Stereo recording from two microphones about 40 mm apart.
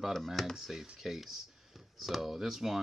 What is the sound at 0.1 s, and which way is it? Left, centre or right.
Speech, centre.